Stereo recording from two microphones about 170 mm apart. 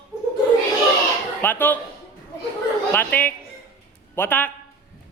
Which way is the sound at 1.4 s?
10° left (ahead or behind).